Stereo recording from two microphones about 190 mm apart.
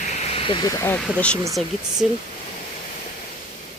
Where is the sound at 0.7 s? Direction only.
10° left (ahead or behind).